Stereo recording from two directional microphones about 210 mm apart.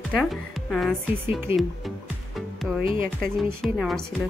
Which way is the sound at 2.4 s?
Centre (ahead or behind).